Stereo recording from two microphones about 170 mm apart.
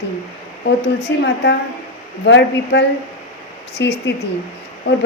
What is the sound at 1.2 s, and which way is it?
A woman's voice, 90° left.